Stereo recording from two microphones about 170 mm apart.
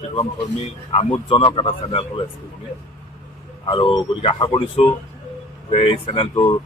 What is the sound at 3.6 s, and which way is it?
A man's voice, 30° left (ahead or behind).